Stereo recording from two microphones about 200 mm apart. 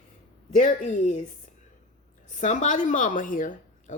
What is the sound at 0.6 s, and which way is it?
Speech, 40° left (ahead or behind).